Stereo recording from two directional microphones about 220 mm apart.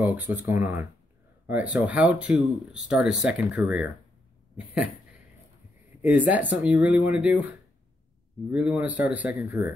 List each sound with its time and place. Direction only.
0.0 s speech: 5° right (ahead or behind)
6.0 s speech: 5° right (ahead or behind)